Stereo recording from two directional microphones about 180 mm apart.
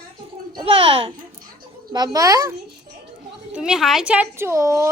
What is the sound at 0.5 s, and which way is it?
Speech, 30° right (ahead or behind).